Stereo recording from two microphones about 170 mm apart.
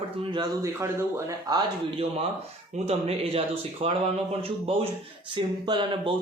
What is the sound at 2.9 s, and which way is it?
A man's voice, 35° right (ahead or behind).